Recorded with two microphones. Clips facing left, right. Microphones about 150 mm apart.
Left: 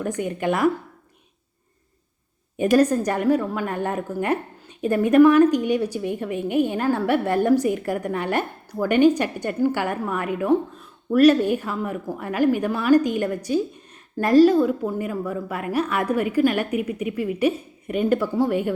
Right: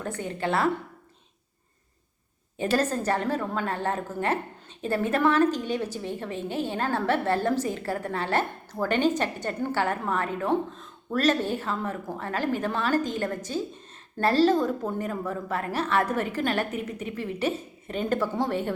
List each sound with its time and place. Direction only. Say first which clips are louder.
0.0 s a woman's voice: left 6 dB; 15° left (ahead or behind)
2.6 s a woman's voice: left 8 dB; 15° left (ahead or behind)